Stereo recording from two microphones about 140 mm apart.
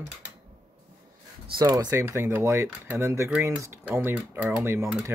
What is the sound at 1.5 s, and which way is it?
Speech, 30° right (ahead or behind).